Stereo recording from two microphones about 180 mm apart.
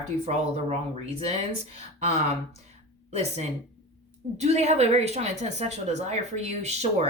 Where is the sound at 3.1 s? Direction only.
35° right (ahead or behind).